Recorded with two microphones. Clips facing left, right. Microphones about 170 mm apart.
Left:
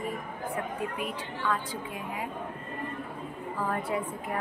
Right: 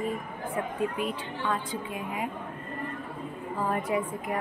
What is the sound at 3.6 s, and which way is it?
Speech, 15° right (ahead or behind).